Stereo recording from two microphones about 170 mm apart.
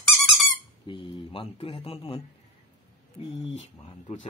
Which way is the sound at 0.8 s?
30° left (ahead or behind).